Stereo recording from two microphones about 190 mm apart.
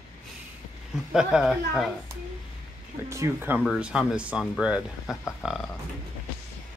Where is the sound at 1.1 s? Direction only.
5° right (ahead or behind).